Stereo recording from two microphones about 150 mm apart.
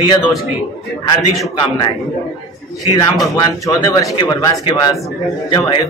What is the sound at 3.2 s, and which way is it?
A man's voice, 25° left (ahead or behind).